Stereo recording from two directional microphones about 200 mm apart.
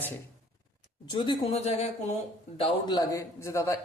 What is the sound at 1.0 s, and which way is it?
Speech, 25° left (ahead or behind).